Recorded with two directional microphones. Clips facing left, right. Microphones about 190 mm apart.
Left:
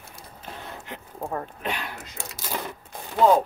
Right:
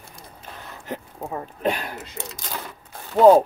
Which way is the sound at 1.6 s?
40° right (ahead or behind).